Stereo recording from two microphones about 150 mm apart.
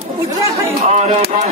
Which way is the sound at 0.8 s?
45° right (ahead or behind).